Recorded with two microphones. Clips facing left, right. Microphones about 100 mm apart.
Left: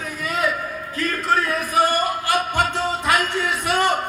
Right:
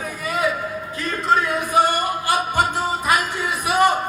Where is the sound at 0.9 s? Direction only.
20° right (ahead or behind).